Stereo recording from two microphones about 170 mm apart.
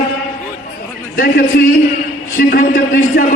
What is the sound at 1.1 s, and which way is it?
A man's voice, 60° left (ahead or behind).